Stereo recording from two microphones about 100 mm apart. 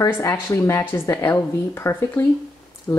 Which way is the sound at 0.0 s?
30° left (ahead or behind).